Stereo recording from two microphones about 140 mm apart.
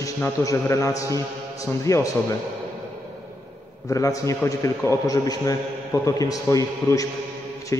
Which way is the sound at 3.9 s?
25° left (ahead or behind).